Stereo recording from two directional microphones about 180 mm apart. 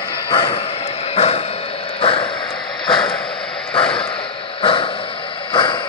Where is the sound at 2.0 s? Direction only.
30° left (ahead or behind).